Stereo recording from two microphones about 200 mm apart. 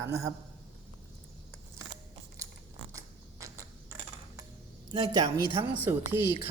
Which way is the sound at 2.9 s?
15° right (ahead or behind).